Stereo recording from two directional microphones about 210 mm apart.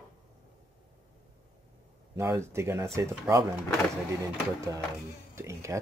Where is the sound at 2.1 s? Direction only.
15° right (ahead or behind).